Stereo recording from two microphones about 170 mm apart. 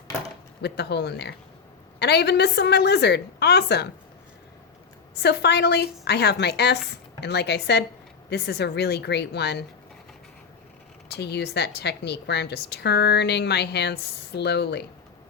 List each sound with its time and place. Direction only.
0.6 s a woman's voice: 80° left
5.2 s speech: 80° left
11.1 s a woman's voice: 80° left